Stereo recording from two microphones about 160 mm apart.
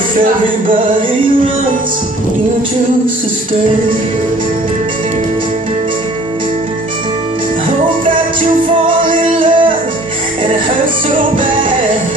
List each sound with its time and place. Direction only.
9.4 s music: 30° right (ahead or behind)